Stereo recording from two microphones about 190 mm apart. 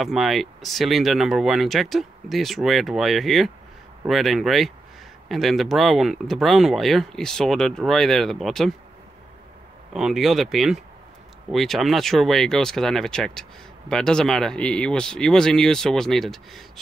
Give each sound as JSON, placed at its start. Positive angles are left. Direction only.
{"t": 0.0, "sound": "speech", "side_deg": 0}
{"t": 9.9, "sound": "speech", "side_deg": 0}